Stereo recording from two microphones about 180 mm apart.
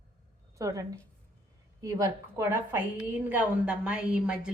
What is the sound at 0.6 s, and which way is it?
A woman's voice, 20° right (ahead or behind).